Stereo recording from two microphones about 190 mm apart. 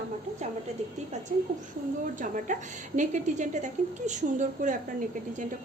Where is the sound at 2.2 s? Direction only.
45° right (ahead or behind).